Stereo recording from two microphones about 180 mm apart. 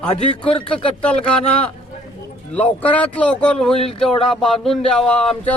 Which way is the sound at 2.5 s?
10° left (ahead or behind).